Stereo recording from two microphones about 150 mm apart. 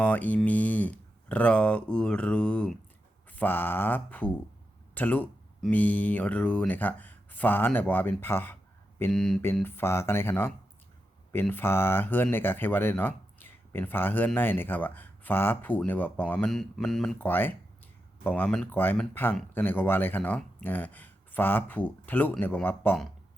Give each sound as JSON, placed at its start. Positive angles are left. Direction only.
{"t": 0.0, "sound": "speech", "side_deg": 10}
{"t": 9.1, "sound": "speech", "side_deg": 5}
{"t": 9.6, "sound": "speech", "side_deg": 15}